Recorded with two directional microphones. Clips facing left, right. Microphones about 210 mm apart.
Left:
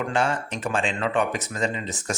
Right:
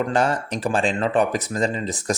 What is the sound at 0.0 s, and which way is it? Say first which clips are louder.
Speech: right 4 dB; 40° right (ahead or behind).